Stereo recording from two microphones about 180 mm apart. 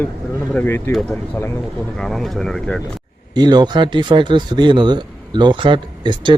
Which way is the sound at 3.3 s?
25° right (ahead or behind).